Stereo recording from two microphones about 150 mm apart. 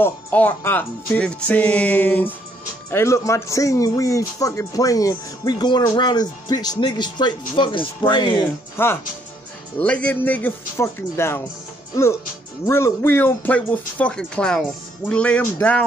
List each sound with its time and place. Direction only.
0.0 s a man's voice: 10° left (ahead or behind); by 8.4 s 30° left (ahead or behind)
8.8 s speech: 15° left (ahead or behind)